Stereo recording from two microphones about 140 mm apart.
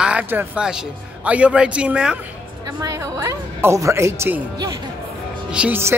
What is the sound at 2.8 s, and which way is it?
A woman's voice, 25° right (ahead or behind).